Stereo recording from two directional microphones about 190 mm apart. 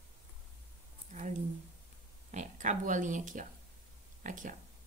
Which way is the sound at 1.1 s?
40° right (ahead or behind).